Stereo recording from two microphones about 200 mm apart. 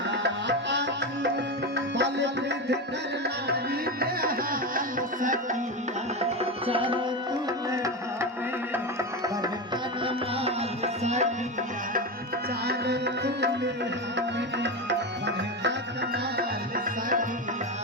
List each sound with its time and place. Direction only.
0.1 s music: 60° right (ahead or behind)
4.0 s music: 50° right (ahead or behind)
6.4 s tabla: 25° right (ahead or behind)
7.7 s music: 15° right (ahead or behind)
10.4 s music: 35° right (ahead or behind)
12.6 s music: 55° right (ahead or behind)
16.7 s music: 40° right (ahead or behind)